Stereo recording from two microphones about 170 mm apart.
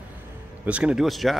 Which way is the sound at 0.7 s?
5° right (ahead or behind).